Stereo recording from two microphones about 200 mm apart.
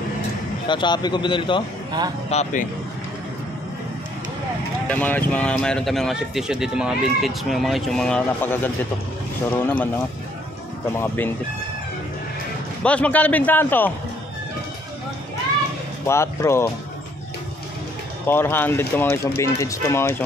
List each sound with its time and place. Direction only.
0.7 s speech: 20° left (ahead or behind)
1.9 s speech: 20° right (ahead or behind)
2.2 s speech: 35° left (ahead or behind)
4.8 s speech: 5° left (ahead or behind)
11.0 s speech: 10° left (ahead or behind)
12.8 s speech: 5° left (ahead or behind)
16.1 s speech: 15° left (ahead or behind)
18.2 s speech: 10° left (ahead or behind)